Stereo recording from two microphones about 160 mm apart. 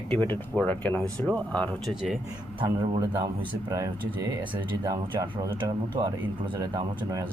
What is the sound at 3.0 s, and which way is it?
Speech, 20° right (ahead or behind).